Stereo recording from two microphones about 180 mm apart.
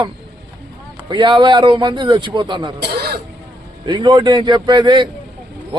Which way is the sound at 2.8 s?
65° right (ahead or behind).